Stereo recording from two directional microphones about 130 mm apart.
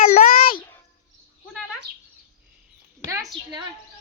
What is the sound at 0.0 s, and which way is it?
Child singing, 85° left.